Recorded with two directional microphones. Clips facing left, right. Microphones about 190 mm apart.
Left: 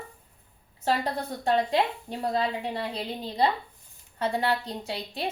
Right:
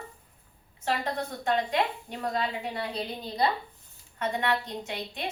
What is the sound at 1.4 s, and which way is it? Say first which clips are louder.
A woman's voice: left 3 dB; 30° left (ahead or behind).